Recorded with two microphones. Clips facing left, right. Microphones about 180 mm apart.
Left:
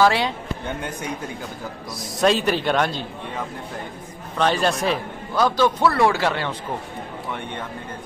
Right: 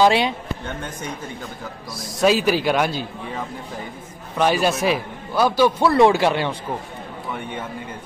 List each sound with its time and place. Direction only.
0.0 s speech: 20° right (ahead or behind)
2.1 s a man's voice: 5° right (ahead or behind)